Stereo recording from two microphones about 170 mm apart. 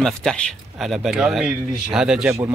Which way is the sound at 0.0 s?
5° left (ahead or behind).